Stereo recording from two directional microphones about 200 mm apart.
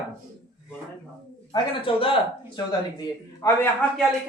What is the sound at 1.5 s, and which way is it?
Speech, 25° left (ahead or behind).